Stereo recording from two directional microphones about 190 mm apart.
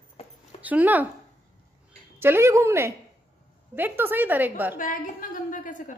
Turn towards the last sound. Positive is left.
turn(degrees=45)  # may be behind; listen again after turning